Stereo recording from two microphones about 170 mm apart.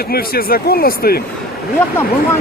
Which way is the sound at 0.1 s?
65° left (ahead or behind).